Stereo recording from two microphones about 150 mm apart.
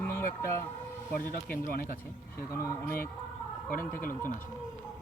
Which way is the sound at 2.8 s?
75° left (ahead or behind).